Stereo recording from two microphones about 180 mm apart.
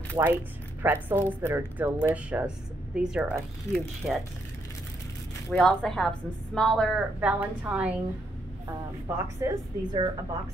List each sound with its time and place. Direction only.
0.2 s speech: 15° right (ahead or behind); by 4.2 s centre (ahead or behind)
5.5 s a woman's voice: 5° left (ahead or behind)
7.2 s speech: 10° right (ahead or behind)
9.0 s speech: 25° right (ahead or behind)